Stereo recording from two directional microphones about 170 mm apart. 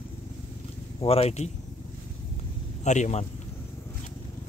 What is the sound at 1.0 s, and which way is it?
Speech, 35° left (ahead or behind).